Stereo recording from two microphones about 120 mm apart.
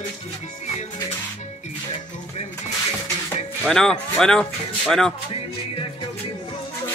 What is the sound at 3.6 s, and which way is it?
Speech, 5° left (ahead or behind).